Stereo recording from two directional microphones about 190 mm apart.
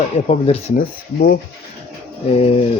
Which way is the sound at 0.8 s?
55° left (ahead or behind).